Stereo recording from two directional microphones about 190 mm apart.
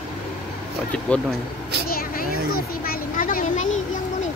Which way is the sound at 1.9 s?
50° left (ahead or behind).